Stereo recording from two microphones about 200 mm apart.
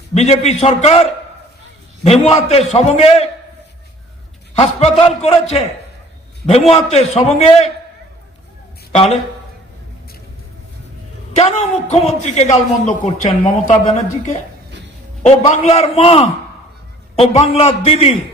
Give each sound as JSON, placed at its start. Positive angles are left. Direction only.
{"t": 0.1, "sound": "a man's voice", "side_deg": 30}
{"t": 2.0, "sound": "a man's voice", "side_deg": 30}
{"t": 4.5, "sound": "a man's voice", "side_deg": 30}
{"t": 6.7, "sound": "a man's voice", "side_deg": 35}
{"t": 8.9, "sound": "speech", "side_deg": 35}
{"t": 11.3, "sound": "a man's voice", "side_deg": 35}
{"t": 15.6, "sound": "a man's voice", "side_deg": 30}
{"t": 17.4, "sound": "a man's voice", "side_deg": 30}